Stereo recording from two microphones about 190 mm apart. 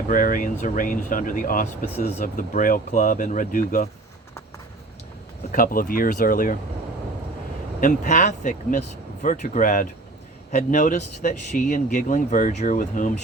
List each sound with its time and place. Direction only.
0.1 s speech: 45° left (ahead or behind)
5.5 s speech: 45° left (ahead or behind)
7.8 s speech: 40° left (ahead or behind)